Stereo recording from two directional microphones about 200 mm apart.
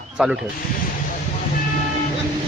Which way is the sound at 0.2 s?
5° right (ahead or behind).